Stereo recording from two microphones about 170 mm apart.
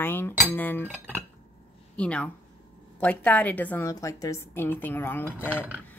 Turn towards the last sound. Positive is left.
turn(degrees=10)  # may be behind; listen again after turning